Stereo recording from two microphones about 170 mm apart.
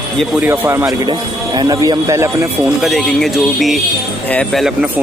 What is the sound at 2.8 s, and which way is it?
A man's voice, centre (ahead or behind).